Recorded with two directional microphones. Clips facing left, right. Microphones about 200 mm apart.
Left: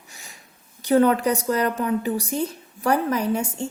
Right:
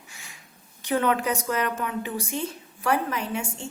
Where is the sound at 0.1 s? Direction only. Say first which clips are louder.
Left 5 dB; 40° left (ahead or behind).